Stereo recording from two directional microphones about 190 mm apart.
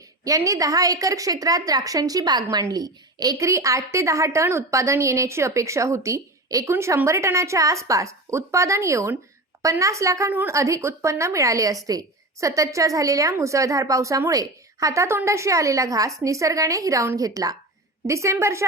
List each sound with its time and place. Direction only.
0.3 s a woman's voice: 15° right (ahead or behind)